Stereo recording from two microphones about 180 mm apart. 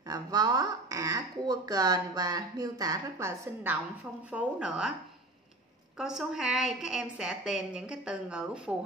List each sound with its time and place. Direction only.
0.1 s a woman's voice: 20° right (ahead or behind); by 4.9 s 5° right (ahead or behind)
5.9 s a woman's voice: 5° right (ahead or behind)